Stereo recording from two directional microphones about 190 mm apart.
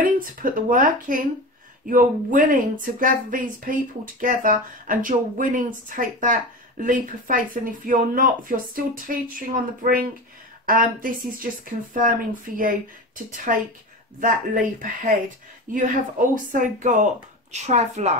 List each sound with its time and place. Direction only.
0.0 s speech: 45° right (ahead or behind)